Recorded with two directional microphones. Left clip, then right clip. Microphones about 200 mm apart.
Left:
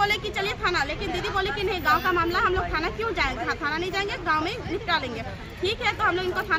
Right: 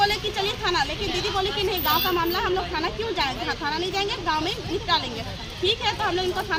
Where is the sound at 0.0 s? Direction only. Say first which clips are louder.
Right 2 dB; 25° left (ahead or behind).